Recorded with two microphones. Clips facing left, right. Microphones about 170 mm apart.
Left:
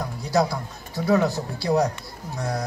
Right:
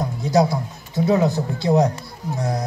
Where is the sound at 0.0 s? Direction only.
20° right (ahead or behind).